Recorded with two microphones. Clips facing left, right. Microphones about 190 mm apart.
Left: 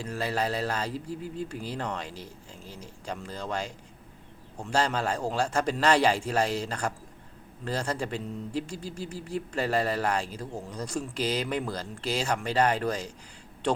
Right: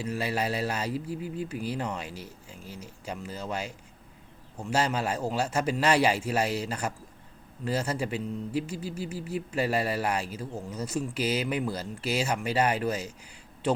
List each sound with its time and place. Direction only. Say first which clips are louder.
0.0 s speech: even; 10° right (ahead or behind)